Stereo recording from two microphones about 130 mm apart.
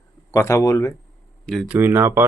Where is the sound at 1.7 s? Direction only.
20° right (ahead or behind).